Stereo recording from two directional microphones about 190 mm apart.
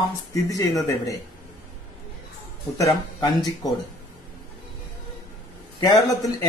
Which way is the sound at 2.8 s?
25° left (ahead or behind).